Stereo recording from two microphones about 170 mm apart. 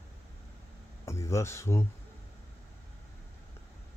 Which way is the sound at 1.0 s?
15° left (ahead or behind).